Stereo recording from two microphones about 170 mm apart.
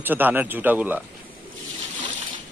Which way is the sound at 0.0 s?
10° right (ahead or behind).